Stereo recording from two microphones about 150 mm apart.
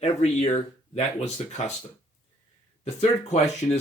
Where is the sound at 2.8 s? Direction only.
45° left (ahead or behind).